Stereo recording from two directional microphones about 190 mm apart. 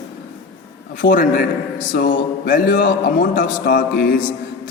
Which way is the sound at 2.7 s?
70° left (ahead or behind).